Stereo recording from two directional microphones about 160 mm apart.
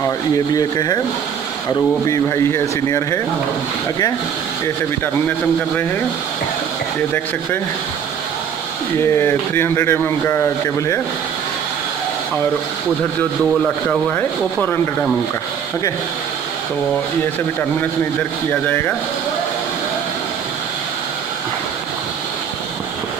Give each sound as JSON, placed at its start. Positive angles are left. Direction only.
{"t": 0.6, "sound": "speech", "side_deg": 25}
{"t": 9.1, "sound": "speech", "side_deg": 15}
{"t": 13.8, "sound": "speech", "side_deg": 10}
{"t": 18.5, "sound": "speech", "side_deg": 10}